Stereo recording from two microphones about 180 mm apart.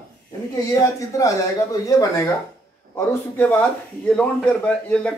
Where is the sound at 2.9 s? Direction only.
10° left (ahead or behind).